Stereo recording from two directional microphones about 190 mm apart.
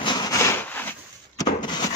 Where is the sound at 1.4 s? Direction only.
20° left (ahead or behind).